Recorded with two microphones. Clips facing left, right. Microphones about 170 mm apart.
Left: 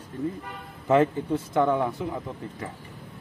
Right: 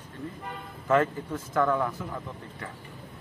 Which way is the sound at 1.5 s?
20° left (ahead or behind).